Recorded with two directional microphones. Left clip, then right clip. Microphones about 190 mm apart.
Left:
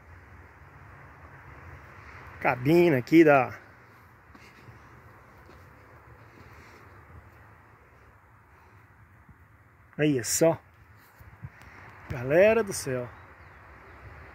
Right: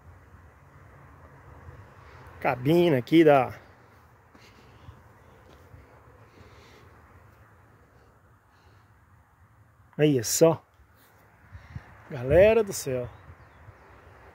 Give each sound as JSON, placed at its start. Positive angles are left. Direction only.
{"t": 2.4, "sound": "speech", "side_deg": -15}
{"t": 9.9, "sound": "speech", "side_deg": -40}
{"t": 12.1, "sound": "speech", "side_deg": -25}